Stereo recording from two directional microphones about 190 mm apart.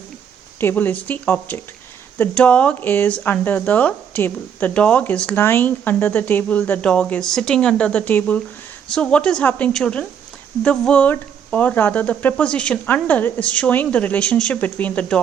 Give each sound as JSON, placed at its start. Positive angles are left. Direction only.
{"t": 0.6, "sound": "speech", "side_deg": 10}